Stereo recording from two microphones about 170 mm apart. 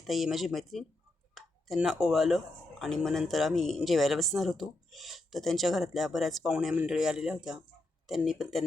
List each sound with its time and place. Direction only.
0.1 s speech: centre (ahead or behind)